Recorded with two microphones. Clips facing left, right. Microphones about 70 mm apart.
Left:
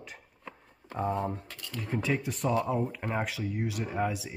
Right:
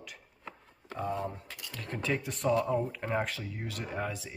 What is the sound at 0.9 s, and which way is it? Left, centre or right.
Speech, left.